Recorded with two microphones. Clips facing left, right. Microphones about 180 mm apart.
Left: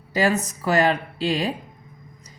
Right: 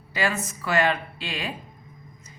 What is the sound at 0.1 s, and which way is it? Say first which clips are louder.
A woman's voice: left 6 dB; 40° left (ahead or behind).